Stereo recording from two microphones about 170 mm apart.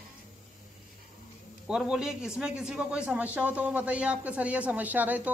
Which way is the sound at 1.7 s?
5° right (ahead or behind).